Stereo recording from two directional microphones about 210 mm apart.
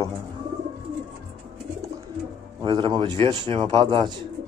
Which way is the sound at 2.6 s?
25° right (ahead or behind).